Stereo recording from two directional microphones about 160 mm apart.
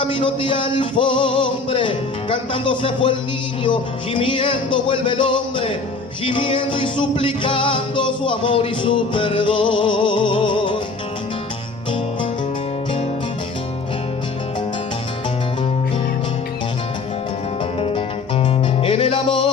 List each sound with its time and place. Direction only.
0.0 s music: 30° left (ahead or behind)
17.7 s music: 35° left (ahead or behind)